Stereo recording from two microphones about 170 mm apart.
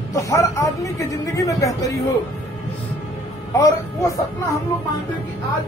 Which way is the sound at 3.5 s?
20° left (ahead or behind).